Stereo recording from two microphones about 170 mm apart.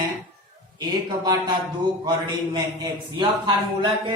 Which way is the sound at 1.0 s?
25° right (ahead or behind).